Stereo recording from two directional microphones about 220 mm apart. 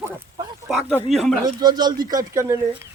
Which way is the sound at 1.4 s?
20° right (ahead or behind).